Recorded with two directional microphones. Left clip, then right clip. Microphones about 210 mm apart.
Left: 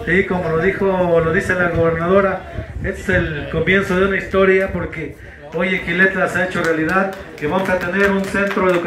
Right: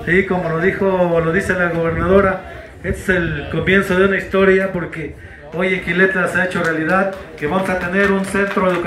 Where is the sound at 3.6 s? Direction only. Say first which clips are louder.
Right 2 dB; 55° right (ahead or behind).